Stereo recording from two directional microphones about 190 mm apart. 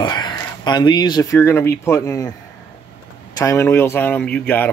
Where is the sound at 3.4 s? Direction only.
15° left (ahead or behind).